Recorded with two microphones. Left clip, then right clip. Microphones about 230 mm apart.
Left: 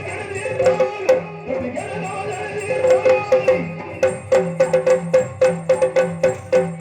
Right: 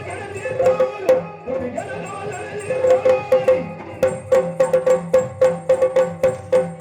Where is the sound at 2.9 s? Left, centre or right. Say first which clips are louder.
Even; right.